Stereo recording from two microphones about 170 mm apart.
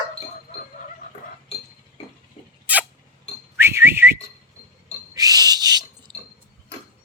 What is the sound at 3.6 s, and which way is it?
Whistling, 15° right (ahead or behind).